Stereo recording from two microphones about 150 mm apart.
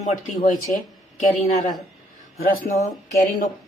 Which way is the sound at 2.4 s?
70° left (ahead or behind).